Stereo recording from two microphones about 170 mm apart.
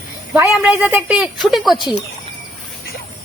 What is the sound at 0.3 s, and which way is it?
A woman's voice, 15° right (ahead or behind).